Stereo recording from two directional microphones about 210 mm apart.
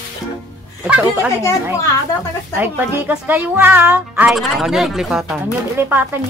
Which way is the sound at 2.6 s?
10° right (ahead or behind).